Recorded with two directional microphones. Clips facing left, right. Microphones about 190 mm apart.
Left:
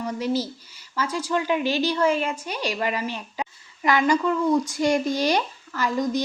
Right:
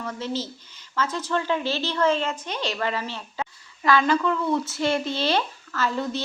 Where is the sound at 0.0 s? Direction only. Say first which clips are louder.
Left 4 dB; 15° left (ahead or behind).